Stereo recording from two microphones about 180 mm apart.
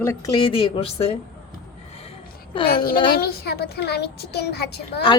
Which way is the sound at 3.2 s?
60° left (ahead or behind).